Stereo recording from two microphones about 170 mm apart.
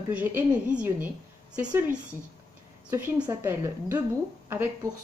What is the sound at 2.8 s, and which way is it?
Speech, 10° right (ahead or behind).